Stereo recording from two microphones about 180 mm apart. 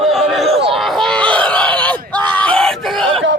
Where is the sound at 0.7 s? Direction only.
Centre (ahead or behind).